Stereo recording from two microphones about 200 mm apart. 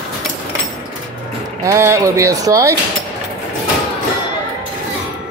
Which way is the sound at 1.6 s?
15° right (ahead or behind).